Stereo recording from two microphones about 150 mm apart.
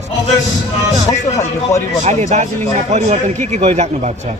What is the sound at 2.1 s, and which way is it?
A man's voice, 50° right (ahead or behind).